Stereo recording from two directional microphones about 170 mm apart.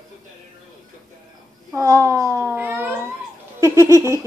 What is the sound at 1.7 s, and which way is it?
A child's voice, 20° right (ahead or behind).